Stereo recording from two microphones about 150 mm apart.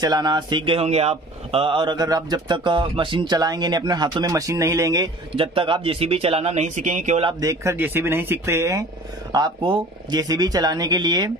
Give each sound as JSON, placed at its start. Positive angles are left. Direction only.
{"t": 0.0, "sound": "speech", "side_deg": -25}
{"t": 5.3, "sound": "speech", "side_deg": -35}
{"t": 7.2, "sound": "speech", "side_deg": -30}
{"t": 9.3, "sound": "speech", "side_deg": -30}